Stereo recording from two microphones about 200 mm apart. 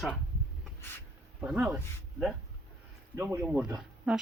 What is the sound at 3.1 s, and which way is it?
Speech, 15° right (ahead or behind).